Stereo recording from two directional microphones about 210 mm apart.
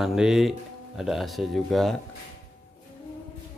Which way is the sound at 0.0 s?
Centre (ahead or behind).